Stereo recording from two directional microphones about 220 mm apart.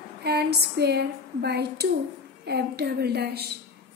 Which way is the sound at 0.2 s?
45° right (ahead or behind).